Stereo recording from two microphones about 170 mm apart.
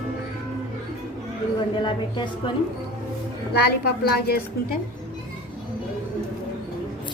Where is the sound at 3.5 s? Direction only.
65° left (ahead or behind).